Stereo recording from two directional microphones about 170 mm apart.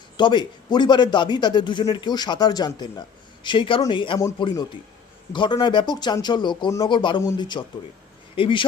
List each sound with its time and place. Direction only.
0.2 s a man's voice: 25° left (ahead or behind)
4.2 s a man's voice: 20° left (ahead or behind)
5.3 s a man's voice: 30° left (ahead or behind)